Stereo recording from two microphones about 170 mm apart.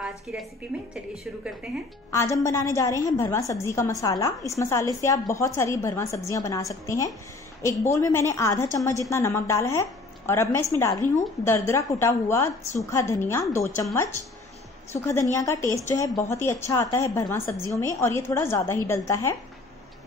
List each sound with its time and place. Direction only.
0.0 s a woman's voice: 5° right (ahead or behind)
2.1 s a woman's voice: 15° left (ahead or behind)
14.9 s a woman's voice: 15° left (ahead or behind)